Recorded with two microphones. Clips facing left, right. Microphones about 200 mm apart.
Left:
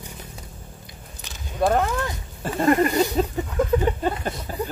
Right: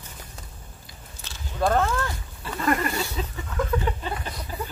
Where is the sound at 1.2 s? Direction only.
15° left (ahead or behind).